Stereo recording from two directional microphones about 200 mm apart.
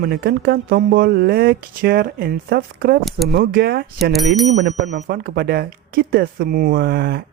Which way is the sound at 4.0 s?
Centre (ahead or behind).